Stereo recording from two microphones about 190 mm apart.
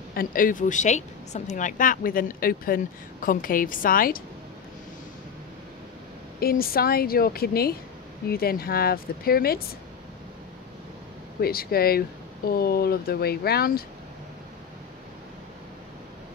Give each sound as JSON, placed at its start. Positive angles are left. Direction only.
{"t": 0.1, "sound": "speech", "side_deg": 50}
{"t": 6.4, "sound": "speech", "side_deg": 50}
{"t": 11.4, "sound": "speech", "side_deg": 55}